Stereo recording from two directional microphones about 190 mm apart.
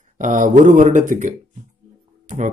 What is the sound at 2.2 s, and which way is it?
Music, 40° right (ahead or behind).